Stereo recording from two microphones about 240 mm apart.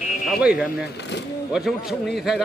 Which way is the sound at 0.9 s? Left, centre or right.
Left.